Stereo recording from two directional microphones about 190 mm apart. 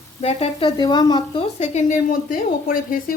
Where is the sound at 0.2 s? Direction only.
35° left (ahead or behind).